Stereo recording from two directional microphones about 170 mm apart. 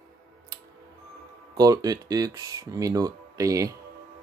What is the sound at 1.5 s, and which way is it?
Speech, 20° right (ahead or behind).